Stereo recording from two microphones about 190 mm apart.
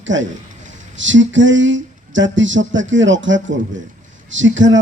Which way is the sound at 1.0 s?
75° right (ahead or behind).